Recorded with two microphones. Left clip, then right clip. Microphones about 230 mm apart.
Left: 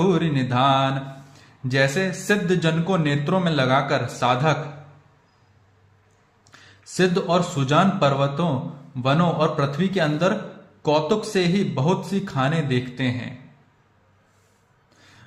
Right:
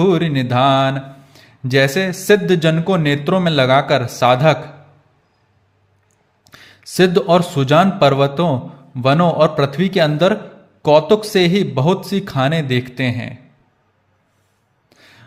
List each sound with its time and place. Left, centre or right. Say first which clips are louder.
0.0 s a man's voice: right 6 dB; right
6.4 s a man's voice: right 8 dB; right
14.8 s music: right 6 dB; right